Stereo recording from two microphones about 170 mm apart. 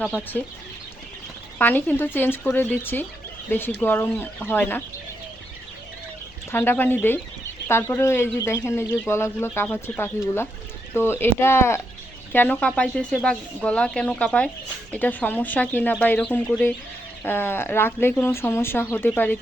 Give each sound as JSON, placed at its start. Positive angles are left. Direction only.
{"t": 0.0, "sound": "speech", "side_deg": 10}
{"t": 1.5, "sound": "speech", "side_deg": 10}
{"t": 6.5, "sound": "speech", "side_deg": 15}